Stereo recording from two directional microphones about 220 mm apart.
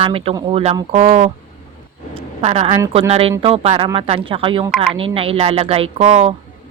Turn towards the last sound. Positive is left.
turn(degrees=-30)  # may be behind; listen again after turning